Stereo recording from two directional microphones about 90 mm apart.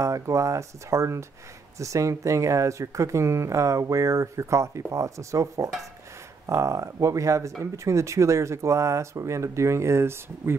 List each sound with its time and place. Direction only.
0.0 s speech: 35° right (ahead or behind)